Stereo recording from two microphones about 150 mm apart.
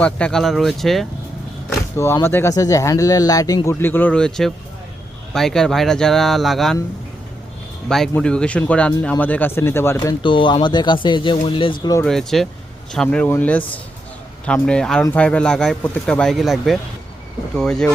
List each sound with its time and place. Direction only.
0.0 s speech: 5° left (ahead or behind)
2.0 s speech: 20° left (ahead or behind); by 6.7 s centre (ahead or behind)
7.9 s speech: 5° left (ahead or behind)
10.0 s speech: 30° left (ahead or behind)
12.0 s speech: centre (ahead or behind)